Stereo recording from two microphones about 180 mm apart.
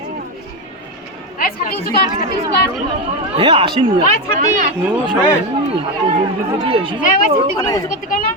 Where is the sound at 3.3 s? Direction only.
30° right (ahead or behind).